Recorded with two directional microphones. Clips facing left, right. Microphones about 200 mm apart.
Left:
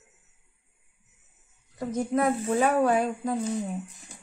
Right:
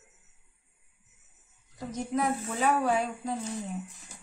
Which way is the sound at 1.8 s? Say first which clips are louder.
Left 5 dB; 55° left (ahead or behind).